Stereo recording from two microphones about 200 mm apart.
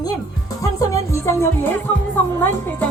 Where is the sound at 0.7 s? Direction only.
15° left (ahead or behind).